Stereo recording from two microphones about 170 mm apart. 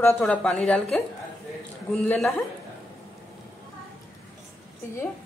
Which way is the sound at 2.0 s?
Centre (ahead or behind).